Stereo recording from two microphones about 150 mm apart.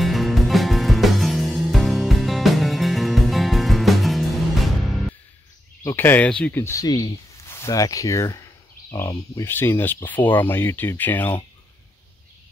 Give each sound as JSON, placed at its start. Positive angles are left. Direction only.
{"t": 0.0, "sound": "music", "side_deg": 0}
{"t": 5.9, "sound": "speech", "side_deg": 15}